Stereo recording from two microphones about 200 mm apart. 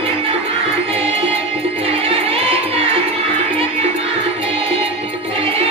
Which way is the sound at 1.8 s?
30° right (ahead or behind).